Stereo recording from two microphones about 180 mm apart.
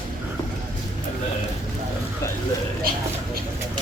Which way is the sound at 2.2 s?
15° left (ahead or behind).